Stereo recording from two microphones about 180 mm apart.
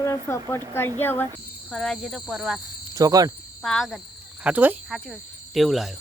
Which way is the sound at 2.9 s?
20° right (ahead or behind).